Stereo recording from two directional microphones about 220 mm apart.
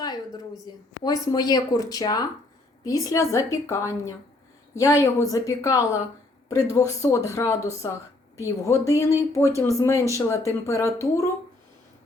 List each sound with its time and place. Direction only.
0.7 s a woman's voice: 20° left (ahead or behind)